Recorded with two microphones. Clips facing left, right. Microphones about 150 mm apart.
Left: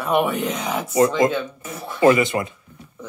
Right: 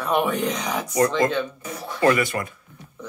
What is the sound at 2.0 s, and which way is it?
Speech, 20° left (ahead or behind).